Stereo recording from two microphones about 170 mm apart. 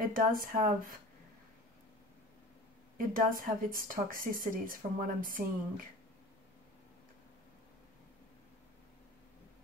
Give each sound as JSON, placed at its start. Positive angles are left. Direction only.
{"t": 0.0, "sound": "speech", "side_deg": -55}
{"t": 3.0, "sound": "speech", "side_deg": -55}